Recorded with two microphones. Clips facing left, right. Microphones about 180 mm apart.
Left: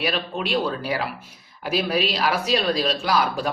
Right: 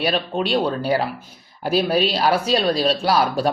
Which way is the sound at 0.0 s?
30° right (ahead or behind).